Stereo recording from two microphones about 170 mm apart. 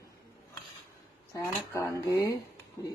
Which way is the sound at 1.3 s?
15° left (ahead or behind).